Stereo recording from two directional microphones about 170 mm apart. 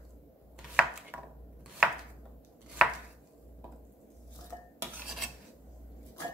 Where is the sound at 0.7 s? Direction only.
5° right (ahead or behind).